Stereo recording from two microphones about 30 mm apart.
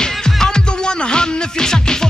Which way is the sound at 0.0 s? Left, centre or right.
Left.